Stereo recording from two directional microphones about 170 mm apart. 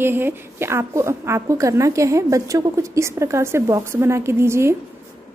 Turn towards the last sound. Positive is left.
turn(degrees=-15)  # may be behind; listen again after turning